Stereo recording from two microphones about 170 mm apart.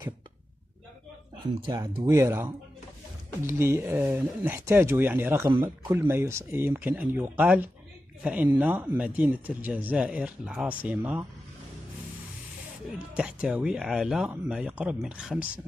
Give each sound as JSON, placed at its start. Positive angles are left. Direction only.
{"t": 2.0, "sound": "speech", "side_deg": -20}
{"t": 13.1, "sound": "speech", "side_deg": -5}